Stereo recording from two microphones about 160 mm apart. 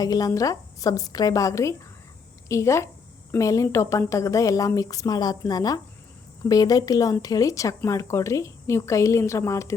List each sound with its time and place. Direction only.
0.0 s a woman's voice: 25° left (ahead or behind)